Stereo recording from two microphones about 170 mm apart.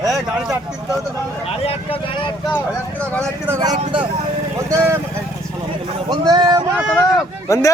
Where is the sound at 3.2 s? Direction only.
20° right (ahead or behind).